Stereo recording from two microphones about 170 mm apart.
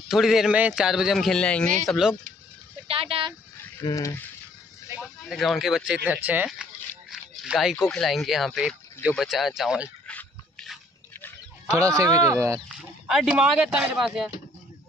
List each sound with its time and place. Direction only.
0.1 s a man's voice: centre (ahead or behind)
2.9 s speech: 35° right (ahead or behind)
3.8 s speech: 20° left (ahead or behind)
5.2 s a man's voice: centre (ahead or behind)
11.6 s speech: 20° right (ahead or behind)
13.0 s a man's voice: 5° right (ahead or behind)